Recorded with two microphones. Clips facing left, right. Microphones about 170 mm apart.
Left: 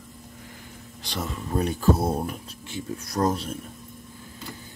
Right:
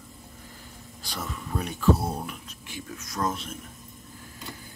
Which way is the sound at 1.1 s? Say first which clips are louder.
Left 4 dB; 25° left (ahead or behind).